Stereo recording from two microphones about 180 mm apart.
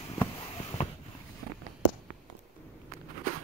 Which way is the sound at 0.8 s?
40° left (ahead or behind).